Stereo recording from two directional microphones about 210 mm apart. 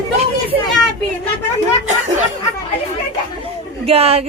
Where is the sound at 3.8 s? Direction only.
30° right (ahead or behind).